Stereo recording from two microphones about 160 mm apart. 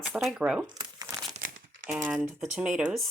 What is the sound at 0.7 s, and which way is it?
Crumpling, 25° right (ahead or behind).